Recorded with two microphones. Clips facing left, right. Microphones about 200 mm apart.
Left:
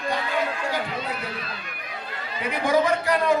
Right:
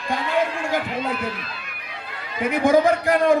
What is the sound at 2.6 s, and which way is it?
Speech, 50° right (ahead or behind).